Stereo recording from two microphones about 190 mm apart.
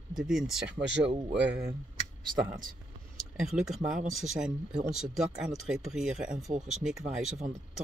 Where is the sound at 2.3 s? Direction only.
45° right (ahead or behind).